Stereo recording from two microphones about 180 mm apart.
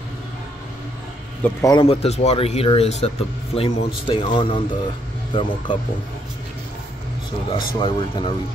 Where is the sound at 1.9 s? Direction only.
35° left (ahead or behind).